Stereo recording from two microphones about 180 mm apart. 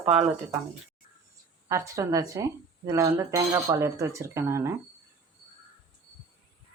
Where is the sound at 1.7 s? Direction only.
15° right (ahead or behind).